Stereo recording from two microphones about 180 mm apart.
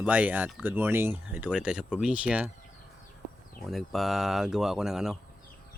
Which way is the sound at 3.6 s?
Centre (ahead or behind).